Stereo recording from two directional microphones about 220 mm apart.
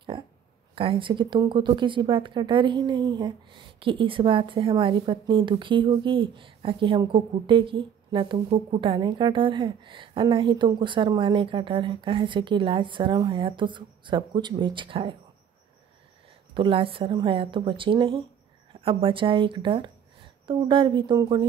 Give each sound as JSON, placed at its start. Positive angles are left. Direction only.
{"t": 0.7, "sound": "speech", "side_deg": -25}
{"t": 16.5, "sound": "speech", "side_deg": -25}